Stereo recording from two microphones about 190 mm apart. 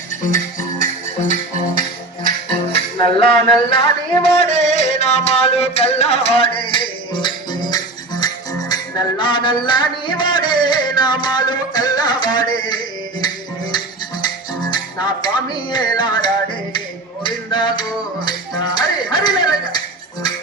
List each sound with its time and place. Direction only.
0.8 s music: 40° left (ahead or behind)
2.7 s music: 30° left (ahead or behind)